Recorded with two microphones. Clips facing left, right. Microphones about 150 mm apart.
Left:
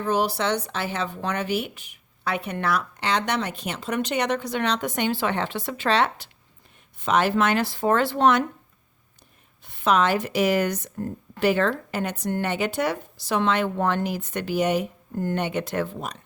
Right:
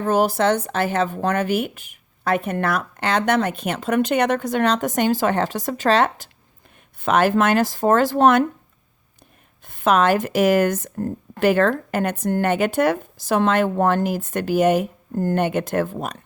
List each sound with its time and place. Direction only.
0.0 s speech: 50° right (ahead or behind)
9.6 s speech: 50° right (ahead or behind)